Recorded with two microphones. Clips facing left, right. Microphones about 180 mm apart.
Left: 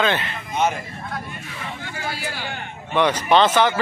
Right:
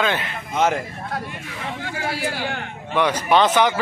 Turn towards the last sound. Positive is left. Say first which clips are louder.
# even
turn(degrees=-15)  # may be behind; listen again after turning